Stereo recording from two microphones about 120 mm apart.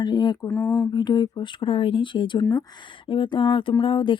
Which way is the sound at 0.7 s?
35° left (ahead or behind).